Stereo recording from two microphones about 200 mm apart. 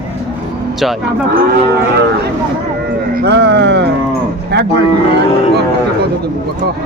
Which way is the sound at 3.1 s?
55° right (ahead or behind).